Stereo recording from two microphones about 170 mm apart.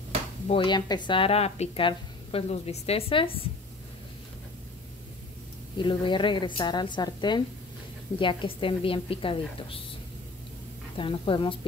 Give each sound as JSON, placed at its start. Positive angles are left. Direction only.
{"t": 0.5, "sound": "speech", "side_deg": 30}
{"t": 5.8, "sound": "a woman's voice", "side_deg": 30}
{"t": 11.0, "sound": "speech", "side_deg": 30}